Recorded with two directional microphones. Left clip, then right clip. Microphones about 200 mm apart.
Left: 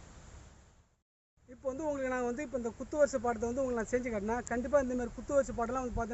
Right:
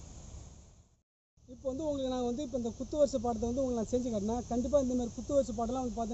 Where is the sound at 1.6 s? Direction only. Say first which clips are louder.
Even; 30° left (ahead or behind).